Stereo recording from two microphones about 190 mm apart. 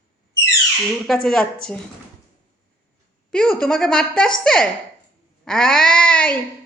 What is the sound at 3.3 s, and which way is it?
A woman's voice, 5° left (ahead or behind).